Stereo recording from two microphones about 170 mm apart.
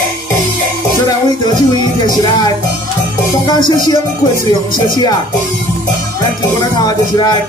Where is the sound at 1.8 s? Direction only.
25° left (ahead or behind).